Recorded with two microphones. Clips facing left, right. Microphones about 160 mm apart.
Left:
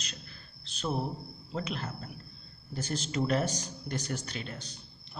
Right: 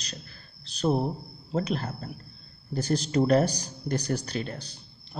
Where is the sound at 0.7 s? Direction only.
40° right (ahead or behind).